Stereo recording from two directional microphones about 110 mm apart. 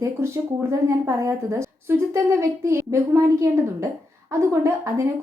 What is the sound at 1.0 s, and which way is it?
A woman's voice, 30° right (ahead or behind).